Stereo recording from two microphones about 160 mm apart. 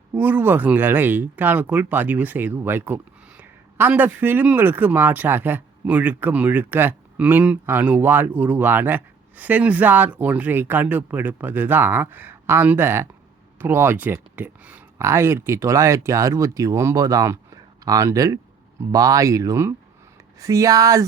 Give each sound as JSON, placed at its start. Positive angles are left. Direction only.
{"t": 0.1, "sound": "speech", "side_deg": -10}